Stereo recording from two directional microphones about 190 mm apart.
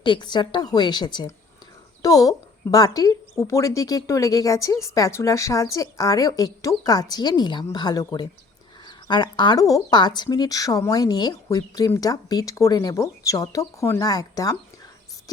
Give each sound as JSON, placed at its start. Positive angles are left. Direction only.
{"t": 0.0, "sound": "a woman's voice", "side_deg": 25}